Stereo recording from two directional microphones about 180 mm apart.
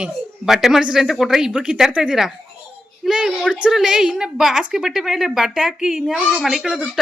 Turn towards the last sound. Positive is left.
turn(degrees=0)  # may be behind; listen again after turning